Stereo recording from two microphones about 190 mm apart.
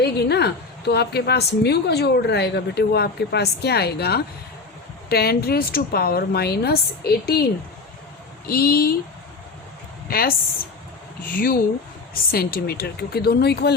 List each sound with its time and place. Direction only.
0.0 s a woman's voice: 60° left (ahead or behind)
8.4 s speech: 50° left (ahead or behind)
10.1 s a woman's voice: 50° left (ahead or behind)